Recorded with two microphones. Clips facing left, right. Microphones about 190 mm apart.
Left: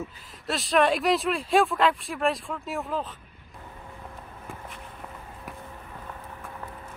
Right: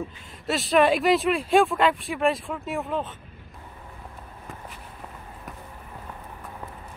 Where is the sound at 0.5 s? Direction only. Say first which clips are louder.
Right 3 dB; centre (ahead or behind).